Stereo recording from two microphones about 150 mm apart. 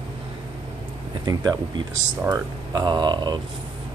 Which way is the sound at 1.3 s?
25° right (ahead or behind).